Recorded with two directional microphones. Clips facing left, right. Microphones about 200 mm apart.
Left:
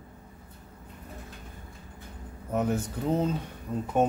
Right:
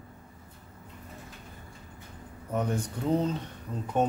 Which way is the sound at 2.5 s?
5° left (ahead or behind).